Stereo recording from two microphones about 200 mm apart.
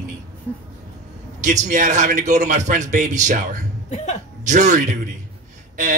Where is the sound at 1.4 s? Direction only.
40° right (ahead or behind).